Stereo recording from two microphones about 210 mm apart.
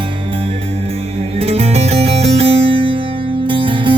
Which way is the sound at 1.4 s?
30° right (ahead or behind).